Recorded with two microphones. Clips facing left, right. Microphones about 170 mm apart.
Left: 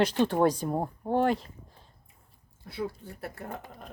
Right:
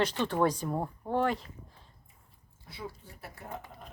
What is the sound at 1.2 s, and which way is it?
Speech, 35° left (ahead or behind).